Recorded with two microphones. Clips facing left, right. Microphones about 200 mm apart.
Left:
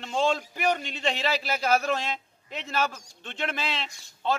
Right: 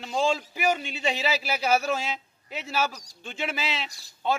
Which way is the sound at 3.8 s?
35° right (ahead or behind).